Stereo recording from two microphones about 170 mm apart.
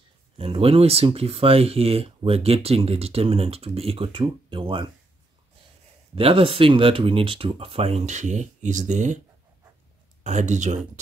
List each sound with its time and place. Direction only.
0.4 s speech: 35° right (ahead or behind)
6.1 s speech: 30° right (ahead or behind)
10.2 s speech: 45° right (ahead or behind)